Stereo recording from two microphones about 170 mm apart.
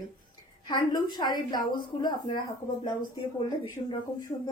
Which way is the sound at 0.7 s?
25° left (ahead or behind).